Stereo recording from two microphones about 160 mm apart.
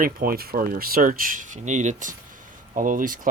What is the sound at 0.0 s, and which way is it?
Speech, 70° right (ahead or behind).